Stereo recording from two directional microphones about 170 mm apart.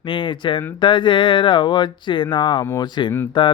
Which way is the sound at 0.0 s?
30° left (ahead or behind).